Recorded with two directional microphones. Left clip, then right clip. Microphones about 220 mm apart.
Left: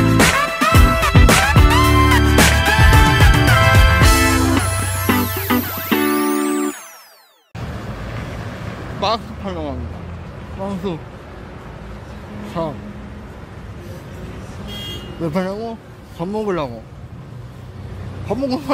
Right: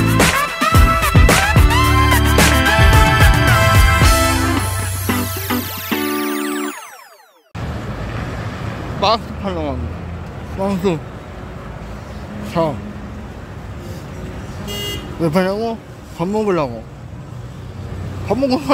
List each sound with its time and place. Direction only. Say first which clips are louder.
0.1 s music: right 1 dB; centre (ahead or behind)
9.0 s vehicle: right 4 dB; centre (ahead or behind)
10.6 s speech: right 7 dB; 30° right (ahead or behind)
12.6 s speech: right 6 dB; 25° right (ahead or behind)
15.2 s speech: right 6 dB; 15° right (ahead or behind)
18.3 s speech: right 4 dB; 5° right (ahead or behind)